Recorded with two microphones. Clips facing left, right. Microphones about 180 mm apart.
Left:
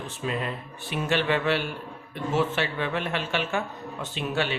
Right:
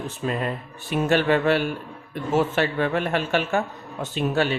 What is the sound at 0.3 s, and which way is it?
A man's voice, 45° right (ahead or behind).